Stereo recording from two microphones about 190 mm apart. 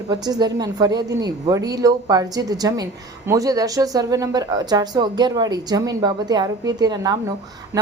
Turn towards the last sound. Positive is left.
turn(degrees=-20)  # may be behind; listen again after turning